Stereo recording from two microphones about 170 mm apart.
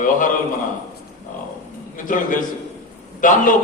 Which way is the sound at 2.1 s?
50° left (ahead or behind).